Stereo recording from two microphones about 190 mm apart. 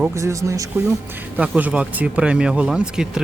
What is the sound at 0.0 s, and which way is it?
Speech, 15° right (ahead or behind).